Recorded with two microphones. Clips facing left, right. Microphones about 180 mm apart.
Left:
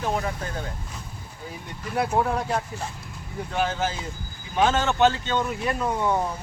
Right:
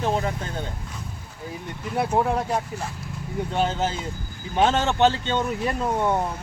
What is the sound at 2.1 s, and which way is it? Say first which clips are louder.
Speech: right 2 dB; 15° right (ahead or behind).